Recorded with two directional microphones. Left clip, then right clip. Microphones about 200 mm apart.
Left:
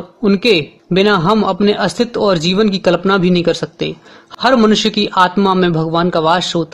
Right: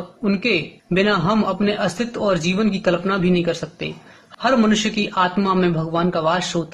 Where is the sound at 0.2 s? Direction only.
40° left (ahead or behind).